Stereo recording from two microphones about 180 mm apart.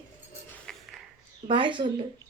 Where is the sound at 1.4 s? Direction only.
25° right (ahead or behind).